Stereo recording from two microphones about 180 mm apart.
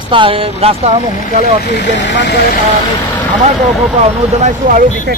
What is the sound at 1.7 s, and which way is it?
Speech, 80° left.